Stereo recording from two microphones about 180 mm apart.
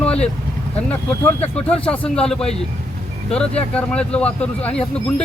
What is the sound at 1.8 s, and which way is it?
Speech, 5° left (ahead or behind).